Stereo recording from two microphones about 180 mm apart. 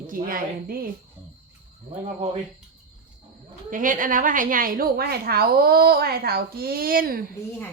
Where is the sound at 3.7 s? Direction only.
45° right (ahead or behind).